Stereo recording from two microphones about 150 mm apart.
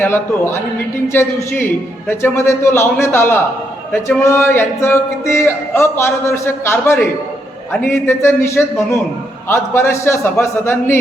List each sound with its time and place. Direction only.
0.0 s speech: 15° left (ahead or behind)